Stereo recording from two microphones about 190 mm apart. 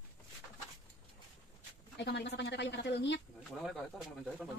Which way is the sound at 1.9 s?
65° left (ahead or behind).